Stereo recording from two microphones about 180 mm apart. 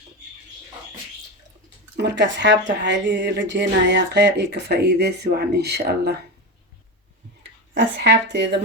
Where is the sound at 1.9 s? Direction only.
75° right (ahead or behind).